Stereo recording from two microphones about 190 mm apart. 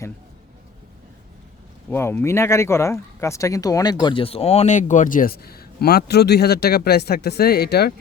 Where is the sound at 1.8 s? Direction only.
10° left (ahead or behind); by 7.9 s 60° left (ahead or behind).